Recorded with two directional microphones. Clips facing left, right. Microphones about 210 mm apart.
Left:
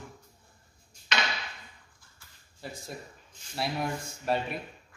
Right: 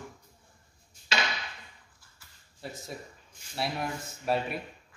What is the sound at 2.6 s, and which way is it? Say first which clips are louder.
Speech: even; centre (ahead or behind).